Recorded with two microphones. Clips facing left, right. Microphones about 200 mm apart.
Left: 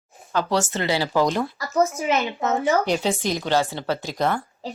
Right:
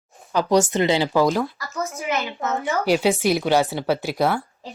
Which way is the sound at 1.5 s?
35° left (ahead or behind).